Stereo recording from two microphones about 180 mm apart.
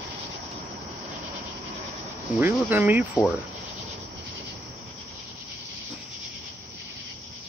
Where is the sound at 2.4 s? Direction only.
15° right (ahead or behind).